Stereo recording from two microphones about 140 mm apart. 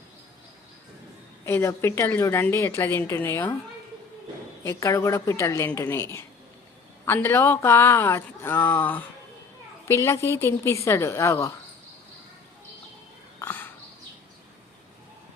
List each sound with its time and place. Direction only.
1.5 s speech: 20° left (ahead or behind)
4.6 s speech: 20° left (ahead or behind)
13.4 s a sound: 15° left (ahead or behind)